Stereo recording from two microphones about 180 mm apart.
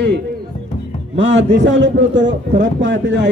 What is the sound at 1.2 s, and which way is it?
A man's voice, 90° right.